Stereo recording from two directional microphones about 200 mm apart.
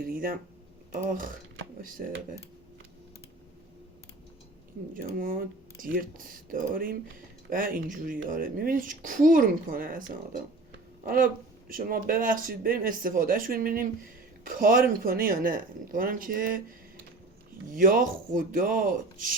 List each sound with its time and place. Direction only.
0.1 s a sound: 45° right (ahead or behind)
0.9 s speech: 45° right (ahead or behind)
5.0 s speech: 40° right (ahead or behind)
11.0 s speech: 45° right (ahead or behind)
17.7 s speech: 45° right (ahead or behind)